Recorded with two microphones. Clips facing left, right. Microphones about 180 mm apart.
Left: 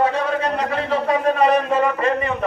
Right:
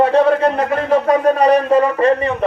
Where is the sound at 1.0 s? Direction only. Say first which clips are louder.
Right 3 dB; 40° right (ahead or behind).